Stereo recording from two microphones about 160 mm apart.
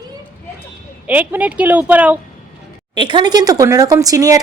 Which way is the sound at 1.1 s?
10° right (ahead or behind).